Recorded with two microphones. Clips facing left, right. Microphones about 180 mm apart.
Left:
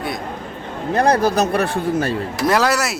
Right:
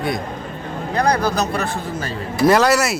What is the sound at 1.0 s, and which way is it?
Speech, 55° left (ahead or behind).